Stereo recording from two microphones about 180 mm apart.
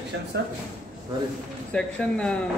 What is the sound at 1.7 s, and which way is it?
Speech, 5° left (ahead or behind).